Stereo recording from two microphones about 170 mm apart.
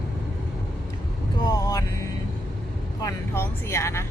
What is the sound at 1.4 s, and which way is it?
Speech, 20° left (ahead or behind).